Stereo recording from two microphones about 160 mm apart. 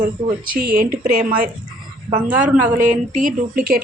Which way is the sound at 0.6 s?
65° right (ahead or behind).